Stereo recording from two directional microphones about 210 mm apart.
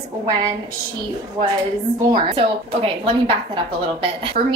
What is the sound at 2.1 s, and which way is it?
A woman's voice, 25° right (ahead or behind).